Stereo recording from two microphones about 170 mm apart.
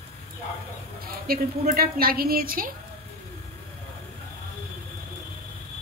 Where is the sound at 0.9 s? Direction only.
60° right (ahead or behind).